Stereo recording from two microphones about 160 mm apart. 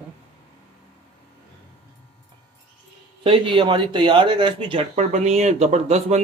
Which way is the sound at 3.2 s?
35° right (ahead or behind).